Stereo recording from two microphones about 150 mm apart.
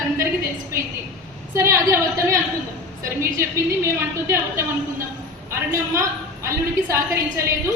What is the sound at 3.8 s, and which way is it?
A man's voice, 15° right (ahead or behind).